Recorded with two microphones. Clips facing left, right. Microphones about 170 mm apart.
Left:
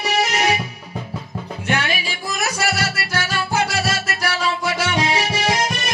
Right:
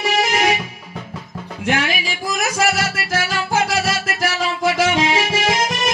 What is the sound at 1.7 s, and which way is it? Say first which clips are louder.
Music: right 2 dB; 90° right.